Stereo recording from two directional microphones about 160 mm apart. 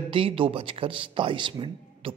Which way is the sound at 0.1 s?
35° right (ahead or behind).